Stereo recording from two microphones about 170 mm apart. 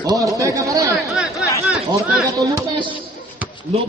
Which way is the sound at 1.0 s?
Centre (ahead or behind).